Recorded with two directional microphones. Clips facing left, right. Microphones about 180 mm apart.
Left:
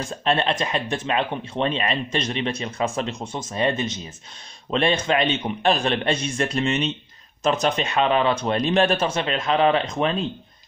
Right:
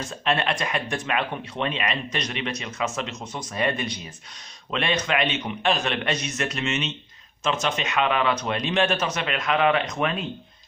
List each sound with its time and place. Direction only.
0.2 s speech: 30° left (ahead or behind)